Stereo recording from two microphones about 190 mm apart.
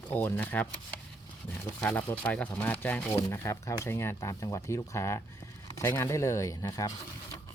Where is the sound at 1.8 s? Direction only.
10° left (ahead or behind).